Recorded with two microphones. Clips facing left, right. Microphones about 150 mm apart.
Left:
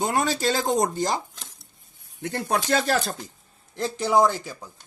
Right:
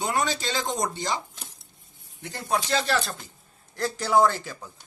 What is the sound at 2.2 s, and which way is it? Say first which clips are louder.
Speech: left 2 dB; 55° left (ahead or behind).